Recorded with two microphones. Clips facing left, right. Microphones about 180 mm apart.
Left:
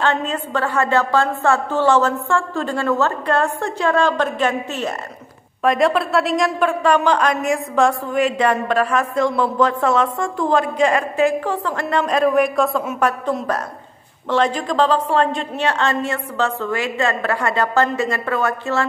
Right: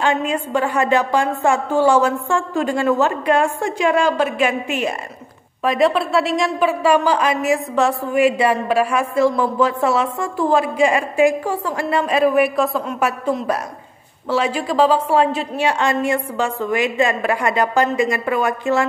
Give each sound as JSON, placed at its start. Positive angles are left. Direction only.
{"t": 0.0, "sound": "a woman's voice", "side_deg": -10}
{"t": 5.6, "sound": "a woman's voice", "side_deg": 0}